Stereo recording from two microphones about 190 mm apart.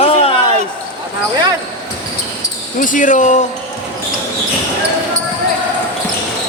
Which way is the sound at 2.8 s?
45° left (ahead or behind).